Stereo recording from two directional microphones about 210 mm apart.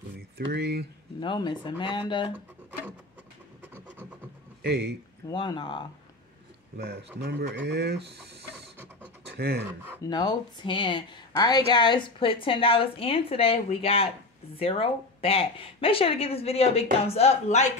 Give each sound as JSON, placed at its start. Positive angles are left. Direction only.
{"t": 0.5, "sound": "speech", "side_deg": -50}
{"t": 1.2, "sound": "a woman's voice", "side_deg": 20}
{"t": 4.6, "sound": "speech", "side_deg": -50}
{"t": 5.3, "sound": "a woman's voice", "side_deg": 20}
{"t": 6.8, "sound": "speech", "side_deg": -50}
{"t": 9.4, "sound": "speech", "side_deg": -50}
{"t": 10.0, "sound": "a woman's voice", "side_deg": 20}